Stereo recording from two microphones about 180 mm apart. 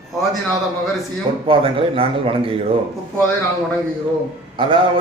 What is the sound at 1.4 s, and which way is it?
A man's voice, 30° right (ahead or behind).